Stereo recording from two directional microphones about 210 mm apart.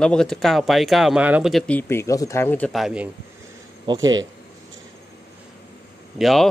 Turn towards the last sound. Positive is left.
turn(degrees=0)  # may be behind; listen again after turning